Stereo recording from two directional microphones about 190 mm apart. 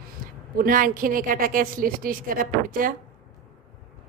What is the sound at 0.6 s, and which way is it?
A woman's voice, 50° right (ahead or behind).